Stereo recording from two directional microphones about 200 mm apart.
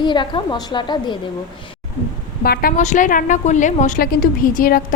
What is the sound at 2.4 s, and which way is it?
A woman's voice, 45° left (ahead or behind).